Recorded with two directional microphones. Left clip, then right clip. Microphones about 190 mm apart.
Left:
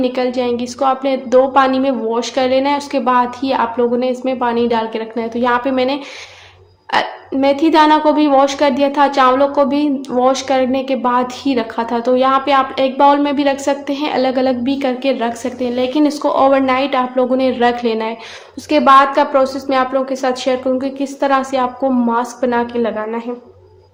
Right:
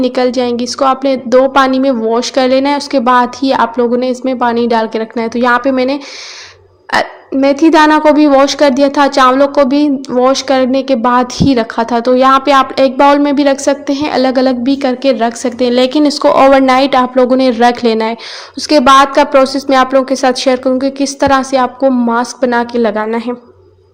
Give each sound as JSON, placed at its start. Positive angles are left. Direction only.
{"t": 0.0, "sound": "a woman's voice", "side_deg": -35}